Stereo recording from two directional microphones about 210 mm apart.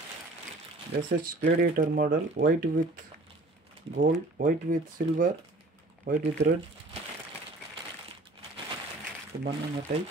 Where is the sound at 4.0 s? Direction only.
40° right (ahead or behind).